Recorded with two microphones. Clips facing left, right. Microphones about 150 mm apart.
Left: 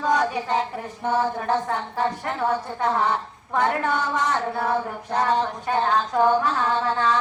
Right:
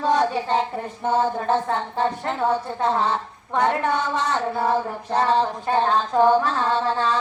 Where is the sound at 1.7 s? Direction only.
25° right (ahead or behind).